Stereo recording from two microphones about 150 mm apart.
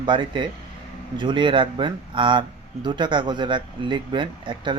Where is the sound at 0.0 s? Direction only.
30° right (ahead or behind).